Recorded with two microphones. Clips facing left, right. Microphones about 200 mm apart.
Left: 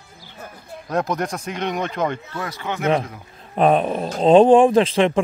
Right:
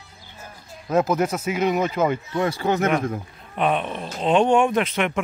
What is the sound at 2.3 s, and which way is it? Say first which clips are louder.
Speech: right 6 dB; 30° right (ahead or behind).